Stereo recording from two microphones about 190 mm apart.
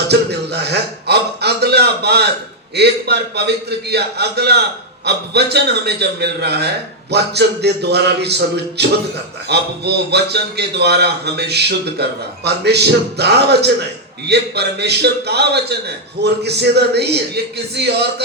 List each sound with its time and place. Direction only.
0.1 s a man's voice: 60° right (ahead or behind)